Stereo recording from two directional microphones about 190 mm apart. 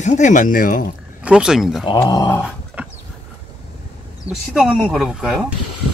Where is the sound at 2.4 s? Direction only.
5° right (ahead or behind).